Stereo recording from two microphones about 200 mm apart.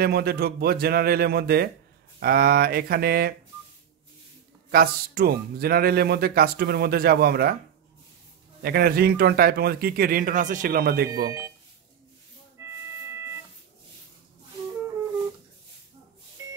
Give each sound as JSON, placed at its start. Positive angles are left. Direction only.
{"t": 0.0, "sound": "a man's voice", "side_deg": -50}
{"t": 4.6, "sound": "a man's voice", "side_deg": -50}
{"t": 8.6, "sound": "a man's voice", "side_deg": -50}